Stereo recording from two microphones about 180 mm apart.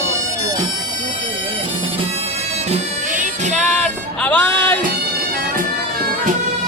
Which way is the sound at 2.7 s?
40° right (ahead or behind).